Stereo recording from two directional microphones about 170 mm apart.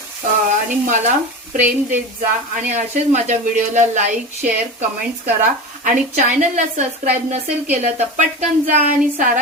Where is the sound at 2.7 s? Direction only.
45° right (ahead or behind).